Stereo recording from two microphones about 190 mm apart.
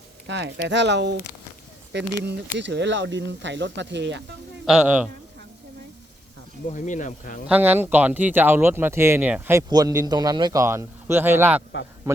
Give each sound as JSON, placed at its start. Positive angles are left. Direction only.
{"t": 0.3, "sound": "speech", "side_deg": -70}
{"t": 6.7, "sound": "speech", "side_deg": 40}
{"t": 7.4, "sound": "speech", "side_deg": -10}